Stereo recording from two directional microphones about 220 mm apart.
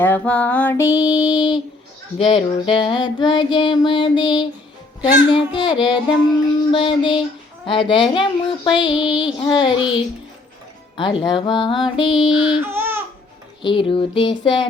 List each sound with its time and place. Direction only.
0.0 s a sound: 5° left (ahead or behind)
2.1 s child singing: 25° left (ahead or behind)
5.5 s child singing: 20° left (ahead or behind)
12.3 s a sound: centre (ahead or behind)
12.6 s babbling: 10° right (ahead or behind)
13.6 s child singing: 20° left (ahead or behind)